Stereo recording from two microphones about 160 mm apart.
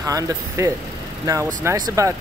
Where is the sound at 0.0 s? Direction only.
20° right (ahead or behind).